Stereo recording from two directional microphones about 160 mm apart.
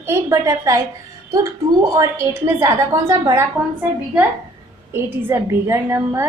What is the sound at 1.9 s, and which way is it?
A woman's voice, 20° right (ahead or behind).